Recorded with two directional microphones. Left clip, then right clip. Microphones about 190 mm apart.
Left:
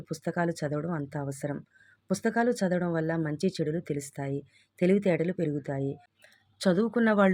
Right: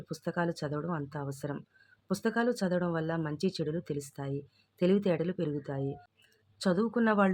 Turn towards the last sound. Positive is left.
turn(degrees=20)  # may be behind; listen again after turning